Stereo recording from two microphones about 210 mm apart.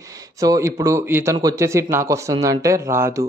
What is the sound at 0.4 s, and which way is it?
A man's voice, 15° right (ahead or behind).